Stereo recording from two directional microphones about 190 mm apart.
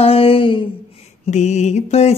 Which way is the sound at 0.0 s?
30° left (ahead or behind).